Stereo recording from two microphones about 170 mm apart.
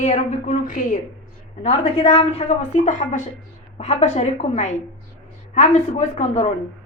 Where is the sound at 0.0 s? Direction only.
45° left (ahead or behind).